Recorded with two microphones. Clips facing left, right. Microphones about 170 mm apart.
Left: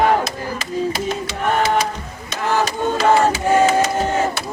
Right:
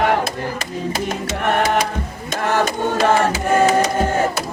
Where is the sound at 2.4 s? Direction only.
50° right (ahead or behind).